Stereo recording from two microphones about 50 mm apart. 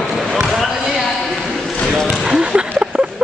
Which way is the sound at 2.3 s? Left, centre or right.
Centre.